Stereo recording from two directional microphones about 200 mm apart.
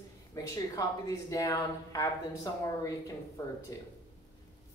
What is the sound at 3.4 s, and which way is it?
Speech, 15° left (ahead or behind).